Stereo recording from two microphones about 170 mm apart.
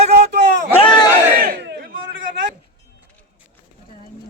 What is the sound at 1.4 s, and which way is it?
Battle cry, 70° right (ahead or behind).